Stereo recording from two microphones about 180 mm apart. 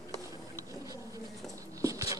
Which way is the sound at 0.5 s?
20° right (ahead or behind).